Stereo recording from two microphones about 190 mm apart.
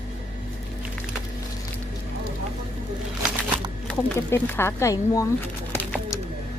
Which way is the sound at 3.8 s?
15° left (ahead or behind).